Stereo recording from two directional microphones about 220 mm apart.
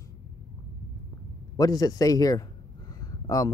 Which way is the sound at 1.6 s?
15° left (ahead or behind).